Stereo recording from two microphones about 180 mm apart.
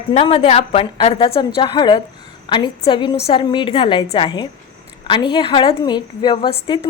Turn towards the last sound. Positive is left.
turn(degrees=25)  # may be behind; listen again after turning